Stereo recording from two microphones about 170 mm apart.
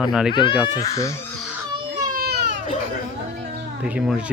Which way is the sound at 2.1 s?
65° right (ahead or behind).